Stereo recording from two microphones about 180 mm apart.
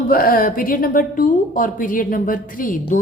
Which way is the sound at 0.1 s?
55° left (ahead or behind).